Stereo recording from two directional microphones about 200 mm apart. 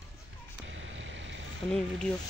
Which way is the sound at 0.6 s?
70° right (ahead or behind).